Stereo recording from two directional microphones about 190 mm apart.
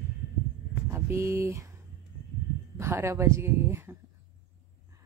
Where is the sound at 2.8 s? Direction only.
15° right (ahead or behind).